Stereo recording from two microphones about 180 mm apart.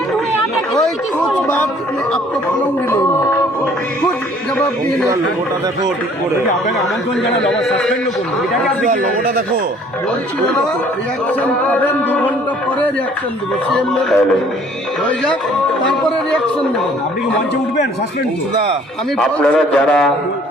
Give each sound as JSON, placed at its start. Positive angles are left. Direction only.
{"t": 1.2, "sound": "a sound", "side_deg": 10}
{"t": 2.9, "sound": "a sound", "side_deg": 15}
{"t": 7.3, "sound": "a man's voice", "side_deg": 0}
{"t": 11.4, "sound": "music", "side_deg": 10}
{"t": 13.7, "sound": "music", "side_deg": 5}
{"t": 19.2, "sound": "a man's voice", "side_deg": 5}